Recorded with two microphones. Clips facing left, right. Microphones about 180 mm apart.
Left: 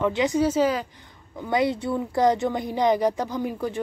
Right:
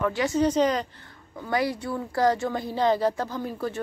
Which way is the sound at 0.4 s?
5° left (ahead or behind).